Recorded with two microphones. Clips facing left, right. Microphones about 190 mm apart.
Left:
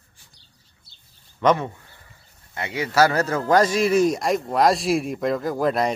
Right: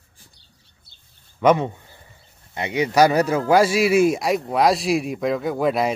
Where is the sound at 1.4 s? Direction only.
20° right (ahead or behind).